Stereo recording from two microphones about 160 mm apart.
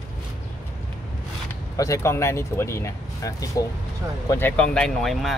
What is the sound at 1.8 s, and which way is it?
Speech, 15° left (ahead or behind).